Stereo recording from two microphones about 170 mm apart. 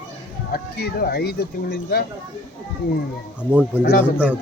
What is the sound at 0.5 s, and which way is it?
Speech, 65° left (ahead or behind).